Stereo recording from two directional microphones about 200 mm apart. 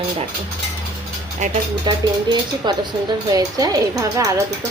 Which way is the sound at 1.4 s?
35° right (ahead or behind).